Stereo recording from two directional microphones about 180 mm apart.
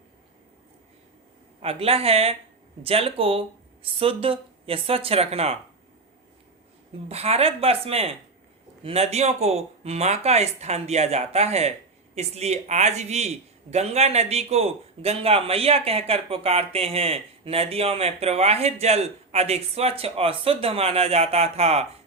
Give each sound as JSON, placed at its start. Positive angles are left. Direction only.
{"t": 1.6, "sound": "a man's voice", "side_deg": -35}
{"t": 7.1, "sound": "a man's voice", "side_deg": -35}